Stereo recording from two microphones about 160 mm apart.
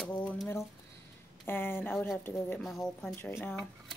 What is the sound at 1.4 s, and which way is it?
A woman's voice, 15° left (ahead or behind).